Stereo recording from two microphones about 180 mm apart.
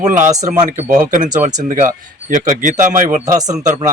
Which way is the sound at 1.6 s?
45° right (ahead or behind).